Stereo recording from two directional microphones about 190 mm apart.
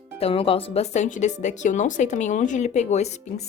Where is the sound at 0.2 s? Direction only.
30° left (ahead or behind).